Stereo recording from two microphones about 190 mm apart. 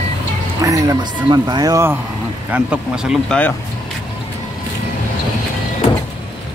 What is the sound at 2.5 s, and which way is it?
Speech, 5° right (ahead or behind).